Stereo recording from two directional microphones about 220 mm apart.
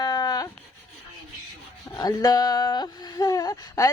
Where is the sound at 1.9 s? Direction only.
15° left (ahead or behind).